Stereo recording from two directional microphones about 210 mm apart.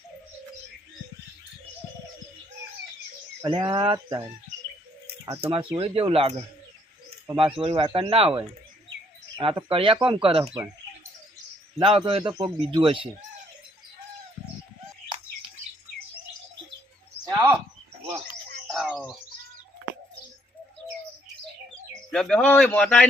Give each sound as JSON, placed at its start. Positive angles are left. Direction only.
{"t": 3.4, "sound": "bird", "side_deg": -20}
{"t": 7.6, "sound": "bird", "side_deg": -25}
{"t": 9.4, "sound": "bird", "side_deg": -25}
{"t": 11.8, "sound": "bird", "side_deg": -25}
{"t": 17.2, "sound": "a sound", "side_deg": -10}
{"t": 18.7, "sound": "bird", "side_deg": 0}
{"t": 22.1, "sound": "a man's voice", "side_deg": 5}